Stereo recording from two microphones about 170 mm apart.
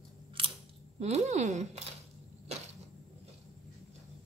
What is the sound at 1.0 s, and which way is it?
Speech, 40° right (ahead or behind).